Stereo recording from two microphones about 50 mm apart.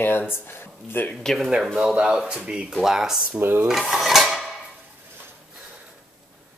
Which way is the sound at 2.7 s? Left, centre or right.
Centre.